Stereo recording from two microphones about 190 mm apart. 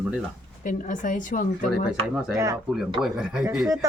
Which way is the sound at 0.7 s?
45° left (ahead or behind).